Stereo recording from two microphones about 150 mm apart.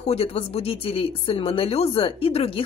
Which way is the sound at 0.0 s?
40° left (ahead or behind).